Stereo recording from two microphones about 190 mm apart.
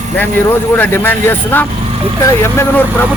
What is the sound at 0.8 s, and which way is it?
A man's voice, 10° left (ahead or behind).